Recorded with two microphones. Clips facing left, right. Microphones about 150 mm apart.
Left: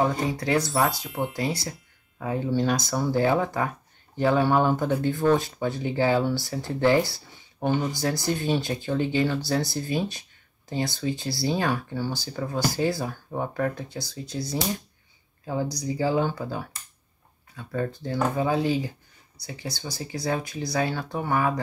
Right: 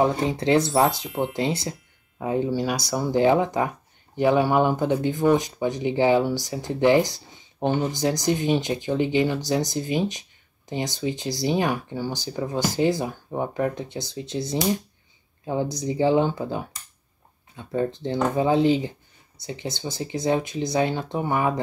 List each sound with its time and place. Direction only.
0.0 s speech: 25° right (ahead or behind)
1.0 s speech: centre (ahead or behind)
1.3 s speech: 25° right (ahead or behind)